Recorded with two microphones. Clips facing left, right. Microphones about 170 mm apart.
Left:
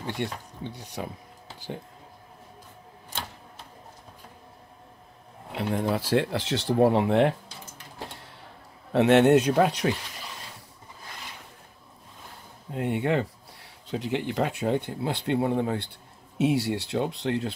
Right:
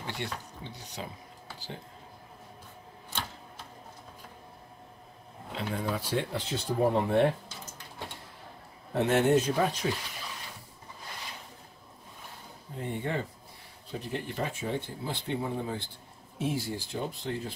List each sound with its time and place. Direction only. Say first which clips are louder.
0.0 s speech: left 5 dB; 55° left (ahead or behind)
5.5 s speech: left 6 dB; 65° left (ahead or behind); by 7.3 s 90° left
8.9 s speech: left 6 dB; 80° left
12.7 s speech: left 8 dB; 70° left (ahead or behind)